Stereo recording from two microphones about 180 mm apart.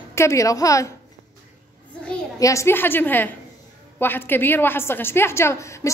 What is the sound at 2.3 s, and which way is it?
A woman's voice, 15° left (ahead or behind).